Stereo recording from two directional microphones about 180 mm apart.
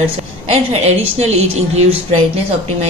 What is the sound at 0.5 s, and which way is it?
Speech, 35° right (ahead or behind).